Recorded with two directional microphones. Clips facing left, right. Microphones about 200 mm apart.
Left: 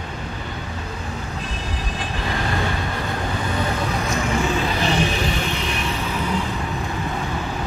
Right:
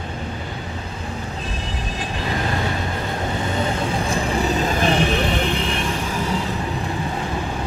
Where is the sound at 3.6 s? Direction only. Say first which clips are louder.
Right 2 dB; 30° right (ahead or behind); by 6.2 s 55° right (ahead or behind).